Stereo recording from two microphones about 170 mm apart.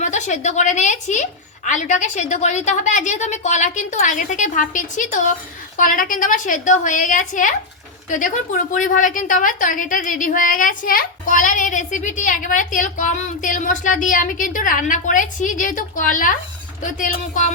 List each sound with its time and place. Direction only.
0.0 s a woman's voice: 45° left (ahead or behind)